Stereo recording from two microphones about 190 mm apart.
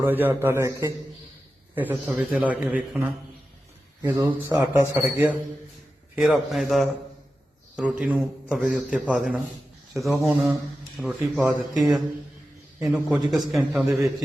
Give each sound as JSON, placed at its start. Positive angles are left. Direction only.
{"t": 0.0, "sound": "a man's voice", "side_deg": -10}
{"t": 4.0, "sound": "a man's voice", "side_deg": -10}
{"t": 6.1, "sound": "a man's voice", "side_deg": 0}